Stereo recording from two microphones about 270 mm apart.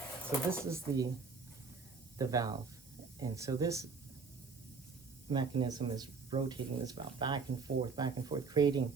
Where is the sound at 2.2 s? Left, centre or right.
Centre.